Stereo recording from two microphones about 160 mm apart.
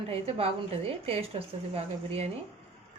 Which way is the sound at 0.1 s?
40° right (ahead or behind).